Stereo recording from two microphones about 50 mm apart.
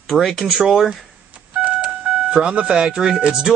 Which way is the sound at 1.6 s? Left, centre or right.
Right.